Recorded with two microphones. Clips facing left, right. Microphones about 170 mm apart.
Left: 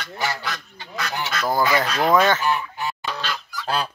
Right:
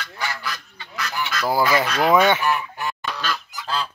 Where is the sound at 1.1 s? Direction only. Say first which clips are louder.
Right 1 dB; 30° left (ahead or behind).